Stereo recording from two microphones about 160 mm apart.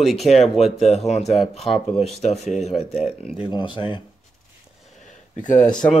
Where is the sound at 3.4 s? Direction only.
30° left (ahead or behind).